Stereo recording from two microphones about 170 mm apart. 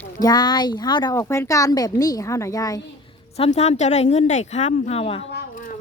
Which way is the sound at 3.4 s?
40° left (ahead or behind).